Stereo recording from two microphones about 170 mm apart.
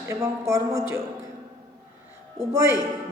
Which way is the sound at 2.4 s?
15° right (ahead or behind).